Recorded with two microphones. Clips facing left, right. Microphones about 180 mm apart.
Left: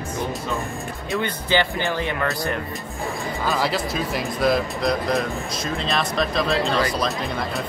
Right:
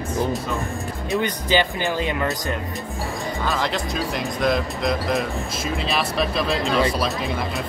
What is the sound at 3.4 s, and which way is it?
Speech, 5° left (ahead or behind).